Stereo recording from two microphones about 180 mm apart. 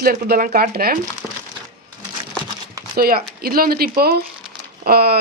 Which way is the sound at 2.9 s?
55° right (ahead or behind).